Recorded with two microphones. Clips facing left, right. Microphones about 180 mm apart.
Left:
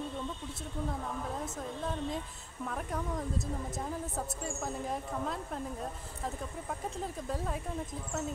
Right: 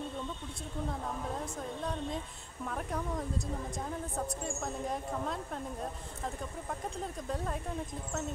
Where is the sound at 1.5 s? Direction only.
Centre (ahead or behind).